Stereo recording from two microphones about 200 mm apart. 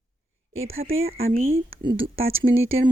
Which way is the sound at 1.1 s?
30° right (ahead or behind).